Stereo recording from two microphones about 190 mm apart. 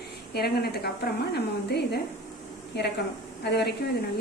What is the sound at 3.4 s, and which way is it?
Speech, 60° left (ahead or behind).